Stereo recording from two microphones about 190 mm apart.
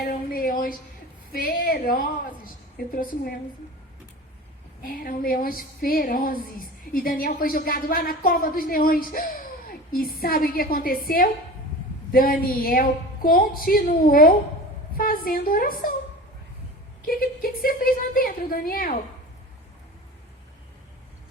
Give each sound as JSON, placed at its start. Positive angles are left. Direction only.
{"t": 0.0, "sound": "a sound", "side_deg": 50}
{"t": 2.7, "sound": "a woman's voice", "side_deg": 50}
{"t": 4.8, "sound": "a woman's voice", "side_deg": 45}
{"t": 17.1, "sound": "a woman's voice", "side_deg": 50}